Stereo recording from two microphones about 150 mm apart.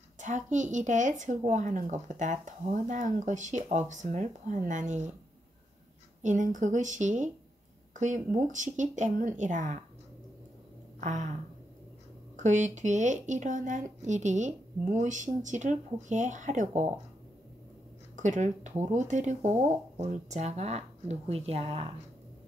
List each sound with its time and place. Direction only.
0.2 s speech: 55° right (ahead or behind)
6.2 s speech: 55° right (ahead or behind)
11.0 s a sound: 55° right (ahead or behind)
12.4 s speech: 55° right (ahead or behind)
18.1 s speech: 55° right (ahead or behind)